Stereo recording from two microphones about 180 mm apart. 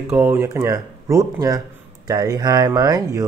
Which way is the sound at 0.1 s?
10° right (ahead or behind).